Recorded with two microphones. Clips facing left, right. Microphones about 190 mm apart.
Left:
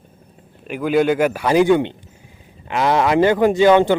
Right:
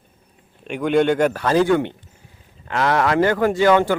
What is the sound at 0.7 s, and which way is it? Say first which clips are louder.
A man's voice: left 1 dB; 5° left (ahead or behind).